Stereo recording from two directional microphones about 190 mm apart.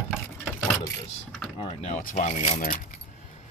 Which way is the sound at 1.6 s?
35° left (ahead or behind).